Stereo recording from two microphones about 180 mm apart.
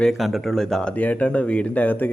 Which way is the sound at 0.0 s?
Centre (ahead or behind).